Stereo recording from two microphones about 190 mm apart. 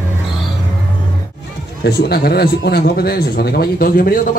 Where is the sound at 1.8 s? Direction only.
55° left (ahead or behind).